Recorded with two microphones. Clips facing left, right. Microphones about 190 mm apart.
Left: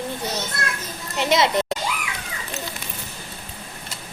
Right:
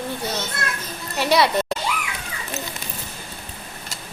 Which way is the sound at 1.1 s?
20° left (ahead or behind).